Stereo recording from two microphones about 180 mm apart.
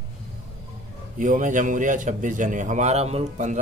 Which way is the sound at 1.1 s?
45° right (ahead or behind).